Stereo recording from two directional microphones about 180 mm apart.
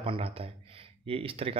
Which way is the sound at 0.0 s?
30° right (ahead or behind).